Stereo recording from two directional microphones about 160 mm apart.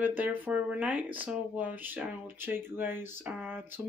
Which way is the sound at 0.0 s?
10° right (ahead or behind).